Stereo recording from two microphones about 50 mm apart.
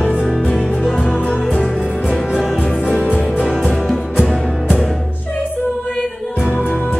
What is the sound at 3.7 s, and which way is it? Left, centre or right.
Music, centre.